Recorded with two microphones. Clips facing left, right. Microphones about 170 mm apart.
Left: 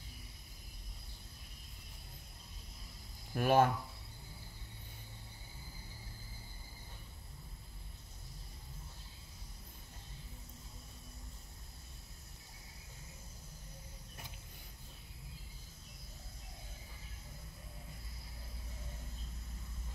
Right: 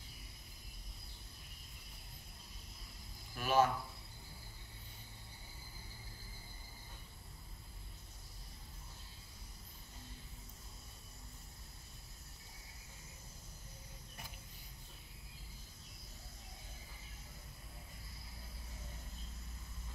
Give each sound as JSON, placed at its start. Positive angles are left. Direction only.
{"t": 3.3, "sound": "speech", "side_deg": 55}